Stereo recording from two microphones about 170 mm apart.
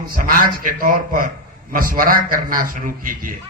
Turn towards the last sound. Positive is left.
turn(degrees=-55)  # may be behind; listen again after turning